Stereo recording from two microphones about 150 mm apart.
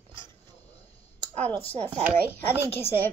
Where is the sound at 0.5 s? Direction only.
45° left (ahead or behind).